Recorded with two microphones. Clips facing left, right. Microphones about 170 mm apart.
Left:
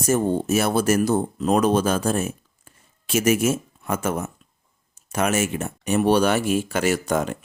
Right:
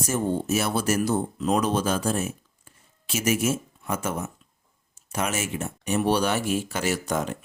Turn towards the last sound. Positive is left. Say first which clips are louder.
# left 5 dB
turn(degrees=55)  # may be behind; listen again after turning